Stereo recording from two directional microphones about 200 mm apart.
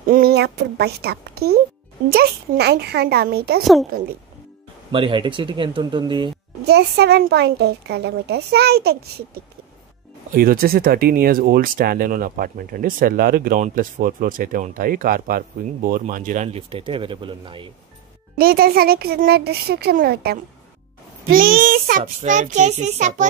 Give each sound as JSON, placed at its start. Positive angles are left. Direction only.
{"t": 0.1, "sound": "a woman's voice", "side_deg": -50}
{"t": 4.9, "sound": "speech", "side_deg": -25}
{"t": 6.6, "sound": "a woman's voice", "side_deg": -55}
{"t": 10.3, "sound": "speech", "side_deg": -45}
{"t": 18.4, "sound": "a child's voice", "side_deg": -50}